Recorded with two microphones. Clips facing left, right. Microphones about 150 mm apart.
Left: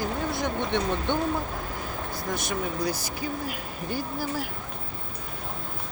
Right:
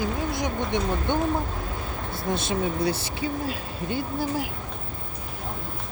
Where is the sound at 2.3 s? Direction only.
25° right (ahead or behind).